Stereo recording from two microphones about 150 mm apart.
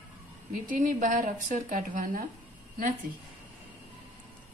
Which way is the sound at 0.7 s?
60° right (ahead or behind).